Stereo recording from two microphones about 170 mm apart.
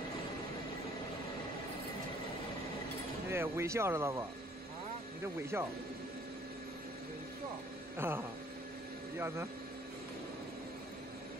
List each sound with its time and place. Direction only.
3.3 s speech: 15° right (ahead or behind)
8.0 s speech: 15° right (ahead or behind)